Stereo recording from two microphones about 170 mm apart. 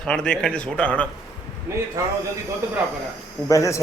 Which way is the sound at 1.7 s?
15° right (ahead or behind).